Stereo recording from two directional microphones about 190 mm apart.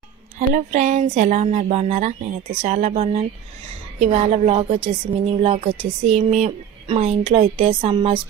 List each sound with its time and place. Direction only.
0.7 s a woman's voice: 40° right (ahead or behind)